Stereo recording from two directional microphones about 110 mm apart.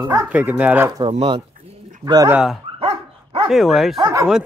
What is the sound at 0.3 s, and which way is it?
Speech, 15° right (ahead or behind).